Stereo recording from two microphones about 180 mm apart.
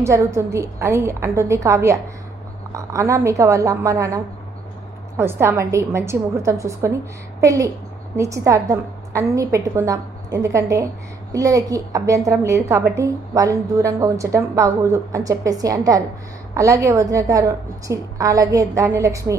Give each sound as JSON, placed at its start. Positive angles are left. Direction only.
{"t": 0.0, "sound": "a woman's voice", "side_deg": -15}